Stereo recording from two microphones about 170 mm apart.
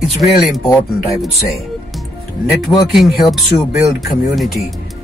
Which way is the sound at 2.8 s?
Centre (ahead or behind).